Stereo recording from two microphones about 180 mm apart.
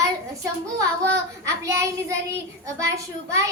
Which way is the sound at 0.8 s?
15° right (ahead or behind).